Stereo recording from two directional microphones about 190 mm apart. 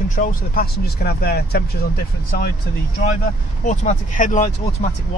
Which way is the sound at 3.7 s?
40° left (ahead or behind).